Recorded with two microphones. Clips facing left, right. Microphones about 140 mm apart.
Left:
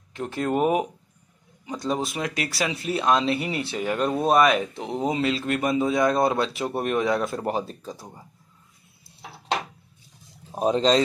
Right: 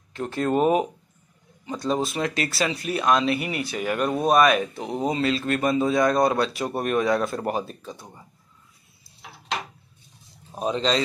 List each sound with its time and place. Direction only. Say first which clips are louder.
0.1 s speech: right 2 dB; 15° left (ahead or behind); by 8.1 s 35° left (ahead or behind)
10.6 s speech: left 4 dB; 40° left (ahead or behind)